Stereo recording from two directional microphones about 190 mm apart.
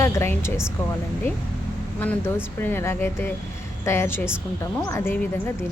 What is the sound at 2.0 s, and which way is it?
A woman's voice, 10° left (ahead or behind).